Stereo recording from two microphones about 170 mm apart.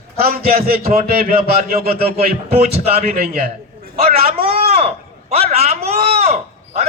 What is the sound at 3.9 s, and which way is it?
A man's voice, 35° right (ahead or behind).